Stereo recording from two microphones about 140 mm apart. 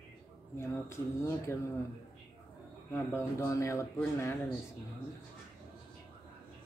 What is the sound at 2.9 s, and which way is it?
Speech, 15° left (ahead or behind).